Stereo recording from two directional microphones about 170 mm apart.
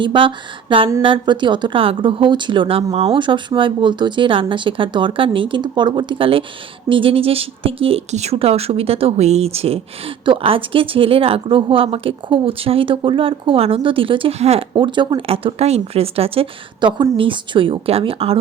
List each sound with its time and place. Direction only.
0.0 s speech: 30° right (ahead or behind)